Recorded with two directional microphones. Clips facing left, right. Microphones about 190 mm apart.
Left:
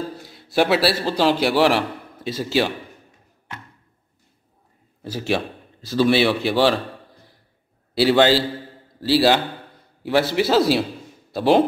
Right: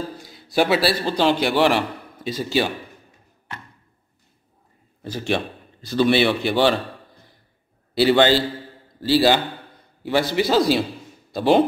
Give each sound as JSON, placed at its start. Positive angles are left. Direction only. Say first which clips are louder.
{"t": 0.2, "sound": "a man's voice", "louder": "even", "side_deg": 0}
{"t": 5.0, "sound": "a man's voice", "louder": "left 1 dB", "side_deg": 5}
{"t": 7.9, "sound": "a man's voice", "louder": "even", "side_deg": 0}